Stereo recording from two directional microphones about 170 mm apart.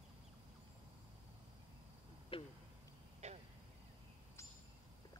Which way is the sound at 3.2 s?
40° right (ahead or behind).